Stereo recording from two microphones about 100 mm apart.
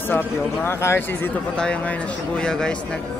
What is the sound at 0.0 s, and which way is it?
Speech, 20° left (ahead or behind).